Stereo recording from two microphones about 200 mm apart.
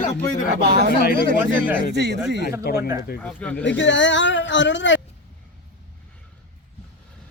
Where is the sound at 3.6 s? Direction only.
65° left (ahead or behind).